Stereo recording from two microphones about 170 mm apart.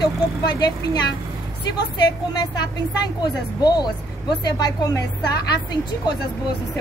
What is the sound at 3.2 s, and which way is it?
A woman's voice, 25° left (ahead or behind).